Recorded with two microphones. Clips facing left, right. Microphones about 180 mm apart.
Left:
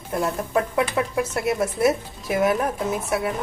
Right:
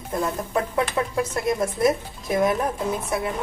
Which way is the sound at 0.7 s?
10° left (ahead or behind).